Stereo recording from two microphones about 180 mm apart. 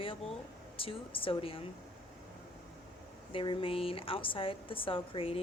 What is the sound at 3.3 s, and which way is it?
A woman's voice, 30° left (ahead or behind).